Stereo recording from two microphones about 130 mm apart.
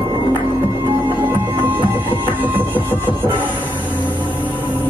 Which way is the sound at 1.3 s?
15° right (ahead or behind).